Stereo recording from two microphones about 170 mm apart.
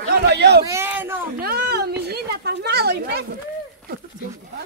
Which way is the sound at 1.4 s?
65° right (ahead or behind).